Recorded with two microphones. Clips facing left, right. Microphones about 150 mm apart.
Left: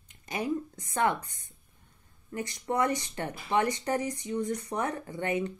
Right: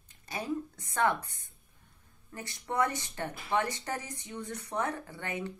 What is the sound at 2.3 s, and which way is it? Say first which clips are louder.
Speech: left 3 dB; 15° left (ahead or behind).